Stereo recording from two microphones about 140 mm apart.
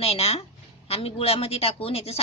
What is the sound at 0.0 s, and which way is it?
A woman's voice, 45° left (ahead or behind).